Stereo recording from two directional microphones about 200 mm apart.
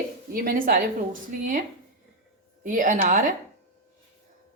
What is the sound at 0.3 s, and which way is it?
Speech, 45° right (ahead or behind).